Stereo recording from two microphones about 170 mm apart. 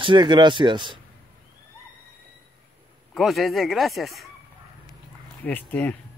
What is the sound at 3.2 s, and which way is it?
Speech, centre (ahead or behind).